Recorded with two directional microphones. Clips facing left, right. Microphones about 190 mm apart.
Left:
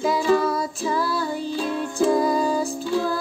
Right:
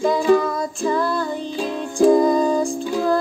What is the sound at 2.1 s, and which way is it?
Music, 5° left (ahead or behind).